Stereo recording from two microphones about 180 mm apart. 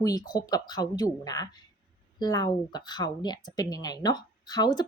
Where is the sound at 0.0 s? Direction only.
20° left (ahead or behind).